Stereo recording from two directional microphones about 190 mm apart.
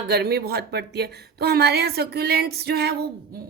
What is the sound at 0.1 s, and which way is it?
Speech, 60° right (ahead or behind).